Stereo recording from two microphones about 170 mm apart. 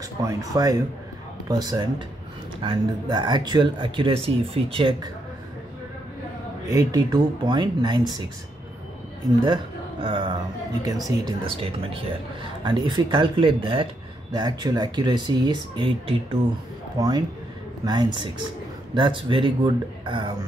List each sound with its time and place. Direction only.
0.2 s speech: 20° right (ahead or behind)
6.7 s speech: 20° right (ahead or behind)
9.4 s speech: 30° right (ahead or behind)
16.9 s speech: 20° right (ahead or behind)